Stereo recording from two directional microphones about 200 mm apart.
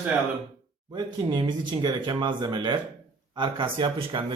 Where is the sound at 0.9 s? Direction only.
20° right (ahead or behind).